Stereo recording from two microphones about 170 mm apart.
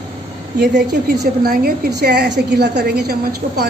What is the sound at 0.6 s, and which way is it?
A woman's voice, 80° right.